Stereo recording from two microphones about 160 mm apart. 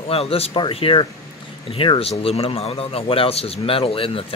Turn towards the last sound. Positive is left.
turn(degrees=35)  # may be behind; listen again after turning